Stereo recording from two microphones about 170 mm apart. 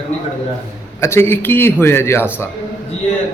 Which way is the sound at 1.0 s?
15° left (ahead or behind).